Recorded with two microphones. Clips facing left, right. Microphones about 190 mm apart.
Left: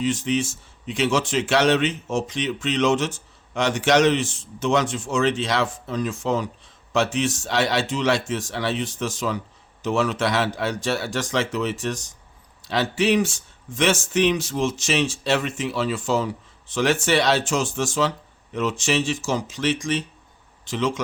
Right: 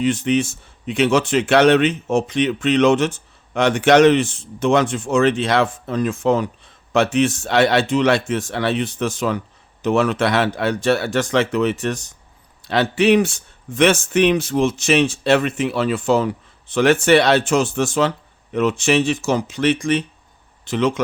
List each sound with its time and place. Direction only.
0.0 s speech: 60° right (ahead or behind)